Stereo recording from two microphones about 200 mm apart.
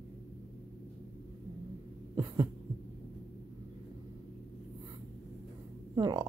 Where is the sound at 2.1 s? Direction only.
20° right (ahead or behind).